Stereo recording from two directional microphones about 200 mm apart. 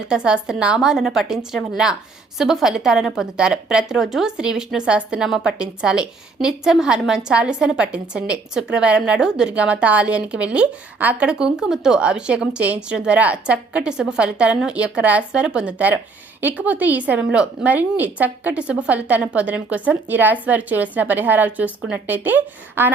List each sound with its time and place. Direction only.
0.1 s a woman's voice: 5° right (ahead or behind)